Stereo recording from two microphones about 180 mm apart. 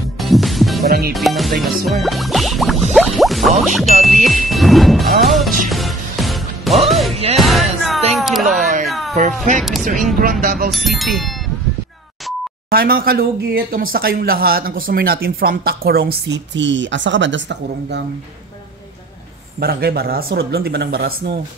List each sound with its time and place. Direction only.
0.2 s music: centre (ahead or behind)
0.8 s speech: 60° right (ahead or behind)
1.1 s music: centre (ahead or behind)
8.2 s a sound: centre (ahead or behind)
9.6 s speech: centre (ahead or behind)
10.4 s speech: 50° right (ahead or behind)
10.7 s music: centre (ahead or behind)
12.6 s speech: 55° right (ahead or behind); by 18.0 s 85° right
19.6 s speech: 60° right (ahead or behind)